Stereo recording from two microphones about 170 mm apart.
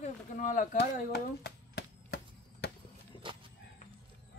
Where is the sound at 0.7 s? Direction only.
75° left (ahead or behind).